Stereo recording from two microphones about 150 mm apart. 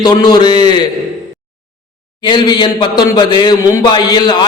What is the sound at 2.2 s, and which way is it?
A man's voice, 30° left (ahead or behind).